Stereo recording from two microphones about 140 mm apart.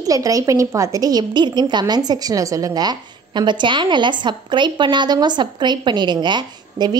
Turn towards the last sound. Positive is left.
turn(degrees=-30)  # may be behind; listen again after turning